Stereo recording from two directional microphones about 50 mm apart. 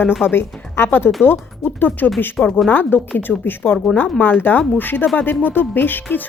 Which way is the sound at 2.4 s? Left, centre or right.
Centre.